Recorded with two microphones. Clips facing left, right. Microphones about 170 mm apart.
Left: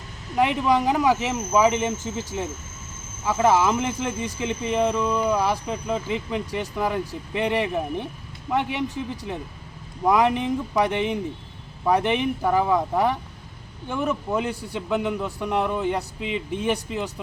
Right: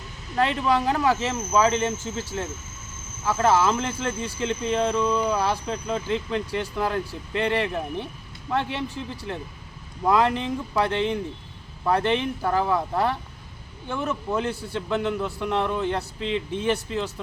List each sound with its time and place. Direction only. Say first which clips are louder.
0.3 s speech: left 2 dB; 15° left (ahead or behind)